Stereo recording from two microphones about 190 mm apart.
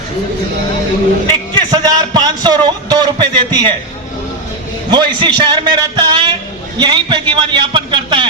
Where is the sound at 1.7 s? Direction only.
20° right (ahead or behind).